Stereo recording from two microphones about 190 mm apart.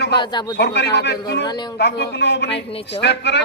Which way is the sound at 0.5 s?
60° left (ahead or behind).